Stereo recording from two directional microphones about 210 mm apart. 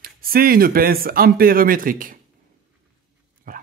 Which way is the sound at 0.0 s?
45° right (ahead or behind).